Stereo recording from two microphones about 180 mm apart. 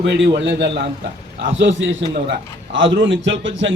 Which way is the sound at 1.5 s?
90° right.